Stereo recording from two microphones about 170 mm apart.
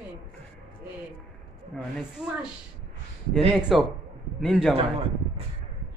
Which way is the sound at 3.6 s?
5° right (ahead or behind).